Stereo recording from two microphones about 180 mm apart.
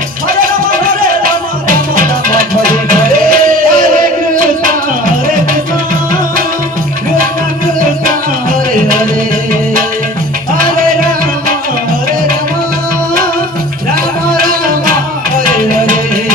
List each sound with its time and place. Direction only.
0.3 s music: 50° right (ahead or behind)
14.3 s music: 55° right (ahead or behind)